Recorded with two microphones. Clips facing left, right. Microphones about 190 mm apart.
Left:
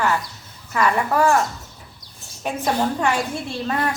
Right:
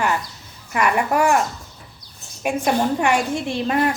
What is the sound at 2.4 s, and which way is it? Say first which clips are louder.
A child's voice: right 2 dB; 15° right (ahead or behind).